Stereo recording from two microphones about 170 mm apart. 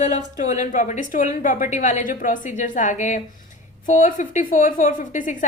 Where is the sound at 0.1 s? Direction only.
45° left (ahead or behind).